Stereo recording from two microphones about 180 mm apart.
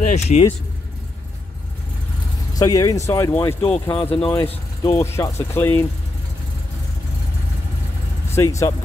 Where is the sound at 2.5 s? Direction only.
20° left (ahead or behind).